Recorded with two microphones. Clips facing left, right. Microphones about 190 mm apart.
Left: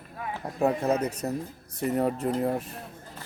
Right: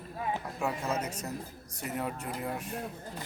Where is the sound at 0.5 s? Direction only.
35° left (ahead or behind).